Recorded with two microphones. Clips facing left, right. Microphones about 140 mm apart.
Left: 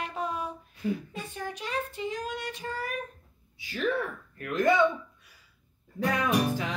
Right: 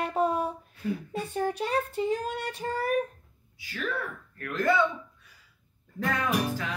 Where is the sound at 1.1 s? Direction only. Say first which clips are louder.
Right 8 dB; 35° right (ahead or behind).